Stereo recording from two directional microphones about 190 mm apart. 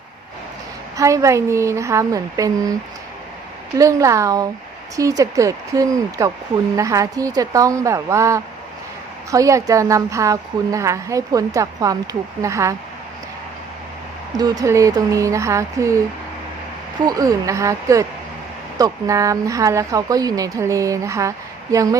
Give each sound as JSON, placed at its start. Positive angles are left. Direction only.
{"t": 0.9, "sound": "speech", "side_deg": -15}
{"t": 3.8, "sound": "speech", "side_deg": -15}
{"t": 14.3, "sound": "speech", "side_deg": -20}
{"t": 17.0, "sound": "speech", "side_deg": -20}